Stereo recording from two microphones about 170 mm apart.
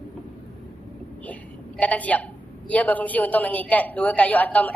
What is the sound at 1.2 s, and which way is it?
A woman's voice, 10° left (ahead or behind).